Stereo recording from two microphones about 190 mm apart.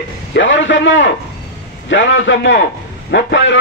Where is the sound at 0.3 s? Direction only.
75° left (ahead or behind).